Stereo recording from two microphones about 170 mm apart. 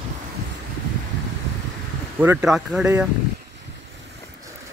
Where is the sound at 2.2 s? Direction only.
10° right (ahead or behind).